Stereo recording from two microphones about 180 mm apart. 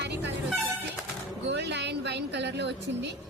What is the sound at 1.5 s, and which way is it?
A woman's voice, 70° right (ahead or behind).